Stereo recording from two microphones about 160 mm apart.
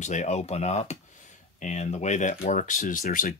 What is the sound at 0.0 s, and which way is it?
Speech, 45° left (ahead or behind).